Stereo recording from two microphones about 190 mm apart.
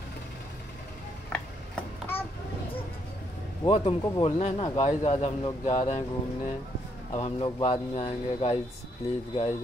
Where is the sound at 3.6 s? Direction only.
30° left (ahead or behind).